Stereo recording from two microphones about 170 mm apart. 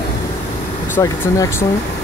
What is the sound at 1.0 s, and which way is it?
Speech, 20° left (ahead or behind).